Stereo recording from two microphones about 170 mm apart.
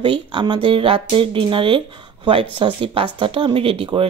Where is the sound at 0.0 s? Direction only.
30° right (ahead or behind).